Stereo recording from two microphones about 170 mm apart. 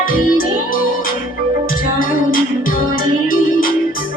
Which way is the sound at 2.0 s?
55° left (ahead or behind).